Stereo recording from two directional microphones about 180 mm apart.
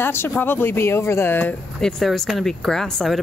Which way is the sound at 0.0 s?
15° left (ahead or behind).